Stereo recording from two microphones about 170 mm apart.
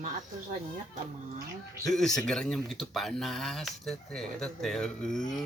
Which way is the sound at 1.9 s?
Centre (ahead or behind).